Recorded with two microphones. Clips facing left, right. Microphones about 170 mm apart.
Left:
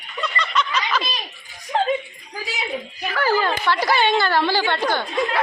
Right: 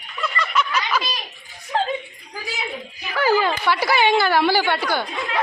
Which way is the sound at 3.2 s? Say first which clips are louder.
Right 2 dB; 15° right (ahead or behind).